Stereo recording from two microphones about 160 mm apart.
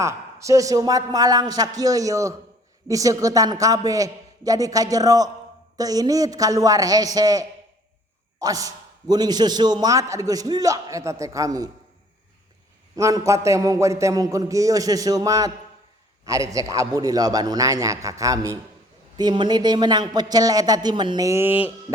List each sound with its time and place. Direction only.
0.0 s a man's voice: 20° right (ahead or behind)
13.0 s a man's voice: 20° right (ahead or behind)